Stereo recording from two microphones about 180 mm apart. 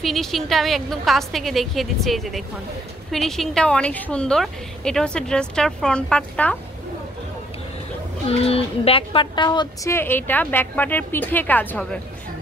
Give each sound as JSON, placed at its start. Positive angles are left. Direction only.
{"t": 0.0, "sound": "a woman's voice", "side_deg": 0}
{"t": 8.3, "sound": "a woman's voice", "side_deg": 35}
{"t": 9.9, "sound": "a woman's voice", "side_deg": 10}